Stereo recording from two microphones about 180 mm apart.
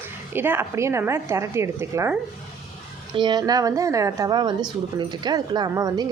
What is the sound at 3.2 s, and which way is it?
Speech, 25° right (ahead or behind).